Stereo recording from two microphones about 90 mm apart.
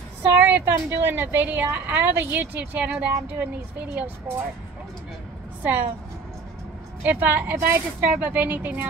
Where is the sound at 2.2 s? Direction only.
20° right (ahead or behind).